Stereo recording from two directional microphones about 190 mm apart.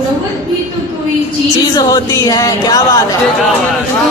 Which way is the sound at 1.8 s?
20° left (ahead or behind).